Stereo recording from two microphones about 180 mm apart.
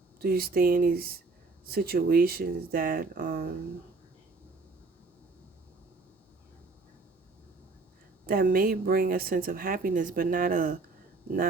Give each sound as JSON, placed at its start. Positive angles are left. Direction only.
{"t": 0.2, "sound": "speech", "side_deg": -60}
{"t": 8.3, "sound": "a woman's voice", "side_deg": -55}